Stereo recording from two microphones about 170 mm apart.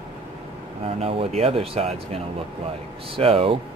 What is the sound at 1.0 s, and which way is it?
Speech, 35° right (ahead or behind).